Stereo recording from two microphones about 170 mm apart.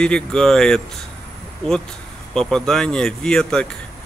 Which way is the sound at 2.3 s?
5° left (ahead or behind).